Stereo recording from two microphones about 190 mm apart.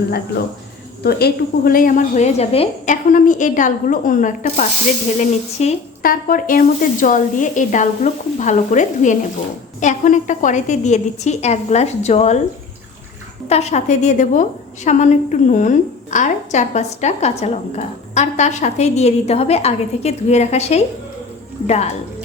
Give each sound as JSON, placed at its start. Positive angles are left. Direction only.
{"t": 1.0, "sound": "a woman's voice", "side_deg": 55}
{"t": 6.0, "sound": "a woman's voice", "side_deg": 50}
{"t": 13.5, "sound": "a woman's voice", "side_deg": 35}